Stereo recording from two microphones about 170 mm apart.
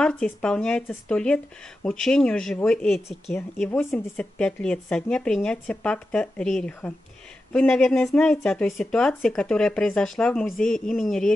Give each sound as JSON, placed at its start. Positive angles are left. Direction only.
{"t": 0.0, "sound": "speech", "side_deg": 5}